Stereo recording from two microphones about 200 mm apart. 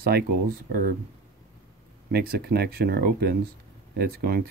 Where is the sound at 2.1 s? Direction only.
50° right (ahead or behind).